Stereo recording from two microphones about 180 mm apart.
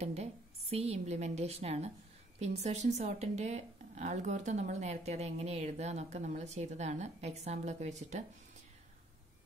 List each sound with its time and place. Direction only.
0.0 s speech: 35° right (ahead or behind)